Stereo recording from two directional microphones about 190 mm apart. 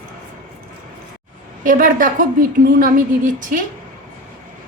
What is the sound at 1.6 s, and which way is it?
A woman's voice, 45° right (ahead or behind).